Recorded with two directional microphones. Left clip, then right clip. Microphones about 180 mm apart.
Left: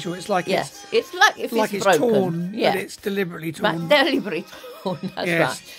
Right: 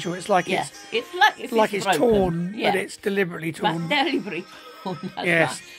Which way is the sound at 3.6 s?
45° left (ahead or behind).